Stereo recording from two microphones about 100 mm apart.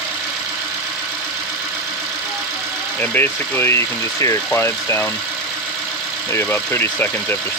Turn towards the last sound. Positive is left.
turn(degrees=20)  # may be behind; listen again after turning